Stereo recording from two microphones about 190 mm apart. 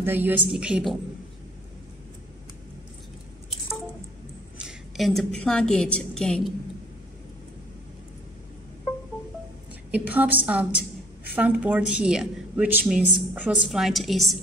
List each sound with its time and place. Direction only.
0.0 s a woman's voice: 10° right (ahead or behind)
4.6 s a woman's voice: centre (ahead or behind)
9.8 s a woman's voice: 10° right (ahead or behind)